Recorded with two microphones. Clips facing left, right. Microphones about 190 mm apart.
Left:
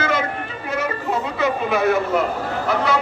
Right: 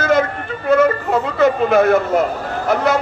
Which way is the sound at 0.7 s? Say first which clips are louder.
Right 10 dB; 50° right (ahead or behind).